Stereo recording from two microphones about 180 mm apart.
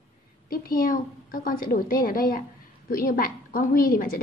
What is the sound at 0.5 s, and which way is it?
A woman's voice, 50° left (ahead or behind).